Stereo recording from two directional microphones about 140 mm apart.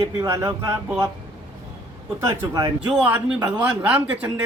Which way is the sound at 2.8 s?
10° right (ahead or behind).